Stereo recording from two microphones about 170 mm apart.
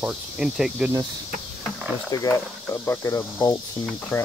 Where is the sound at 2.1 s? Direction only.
20° left (ahead or behind).